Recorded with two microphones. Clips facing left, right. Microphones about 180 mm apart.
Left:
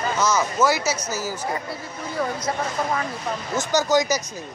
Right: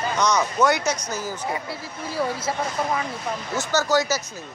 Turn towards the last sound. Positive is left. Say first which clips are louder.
# left 2 dB
turn(degrees=15)  # may be behind; listen again after turning